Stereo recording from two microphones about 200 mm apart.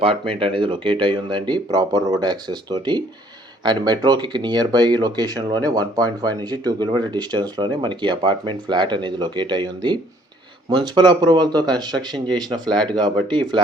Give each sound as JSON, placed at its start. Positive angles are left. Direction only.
{"t": 0.0, "sound": "speech", "side_deg": -30}